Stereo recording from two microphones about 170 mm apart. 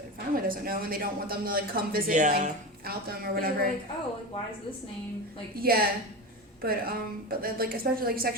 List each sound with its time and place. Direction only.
0.3 s speech: 60° right (ahead or behind)
5.5 s speech: 60° right (ahead or behind)